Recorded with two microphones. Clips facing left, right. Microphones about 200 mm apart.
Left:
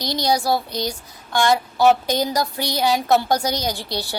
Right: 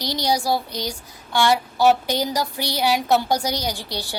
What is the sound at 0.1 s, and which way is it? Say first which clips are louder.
A woman's voice: left 2 dB; 10° right (ahead or behind).